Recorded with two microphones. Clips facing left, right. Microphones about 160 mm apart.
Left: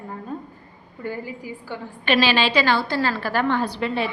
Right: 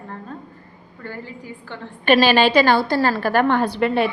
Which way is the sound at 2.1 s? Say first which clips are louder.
Right 5 dB; 50° right (ahead or behind).